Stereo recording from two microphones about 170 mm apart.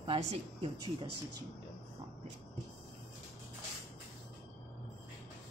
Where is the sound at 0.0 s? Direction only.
35° right (ahead or behind).